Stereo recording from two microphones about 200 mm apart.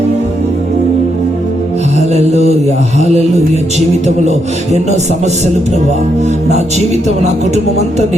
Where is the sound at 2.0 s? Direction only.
35° right (ahead or behind).